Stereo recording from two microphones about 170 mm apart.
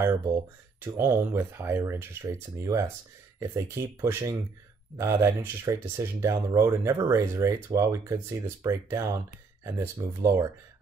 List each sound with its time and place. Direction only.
0.7 s speech: 15° right (ahead or behind)